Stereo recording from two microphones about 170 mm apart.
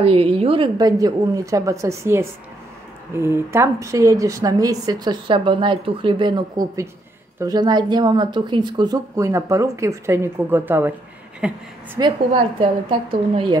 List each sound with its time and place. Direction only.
0.0 s a woman's voice: 35° right (ahead or behind); by 11.6 s 5° right (ahead or behind)
12.0 s a woman's voice: 25° right (ahead or behind)